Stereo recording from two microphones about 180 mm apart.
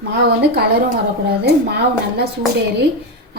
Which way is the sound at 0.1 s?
65° right (ahead or behind).